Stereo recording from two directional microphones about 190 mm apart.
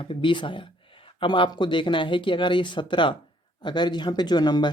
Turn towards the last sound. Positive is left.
turn(degrees=20)  # may be behind; listen again after turning